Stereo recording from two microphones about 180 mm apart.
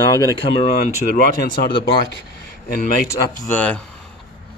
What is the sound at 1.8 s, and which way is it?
Speech, 75° left (ahead or behind).